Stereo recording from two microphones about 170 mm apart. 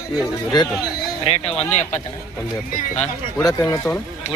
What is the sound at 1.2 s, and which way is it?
Speech, 35° left (ahead or behind).